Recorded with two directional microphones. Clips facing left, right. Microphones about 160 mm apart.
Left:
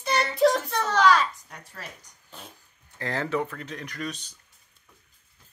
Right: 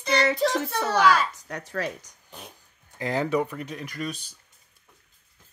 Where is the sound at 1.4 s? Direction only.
90° right.